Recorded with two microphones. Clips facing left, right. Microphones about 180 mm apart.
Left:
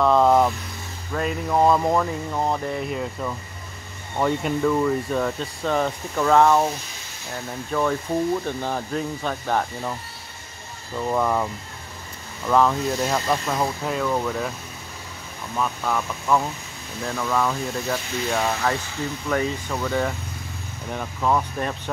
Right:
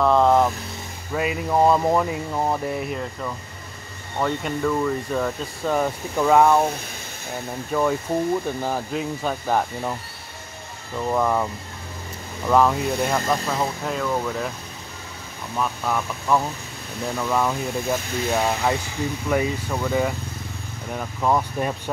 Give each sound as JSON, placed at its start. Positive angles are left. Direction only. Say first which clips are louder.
{"t": 0.0, "sound": "vehicle", "louder": "even", "side_deg": 0}
{"t": 1.1, "sound": "speech", "louder": "right 1 dB", "side_deg": -10}
{"t": 7.7, "sound": "speech", "louder": "right 1 dB", "side_deg": -10}
{"t": 11.1, "sound": "speech", "louder": "right 1 dB", "side_deg": 0}
{"t": 12.4, "sound": "speech", "louder": "right 1 dB", "side_deg": -5}
{"t": 15.5, "sound": "speech", "louder": "even", "side_deg": -5}